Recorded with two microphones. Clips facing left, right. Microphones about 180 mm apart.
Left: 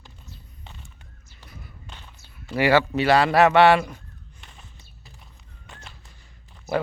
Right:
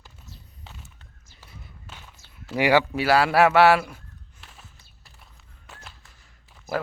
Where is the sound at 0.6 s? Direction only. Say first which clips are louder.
Even; 5° right (ahead or behind).